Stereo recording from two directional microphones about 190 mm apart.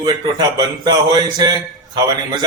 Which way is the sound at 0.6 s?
20° right (ahead or behind).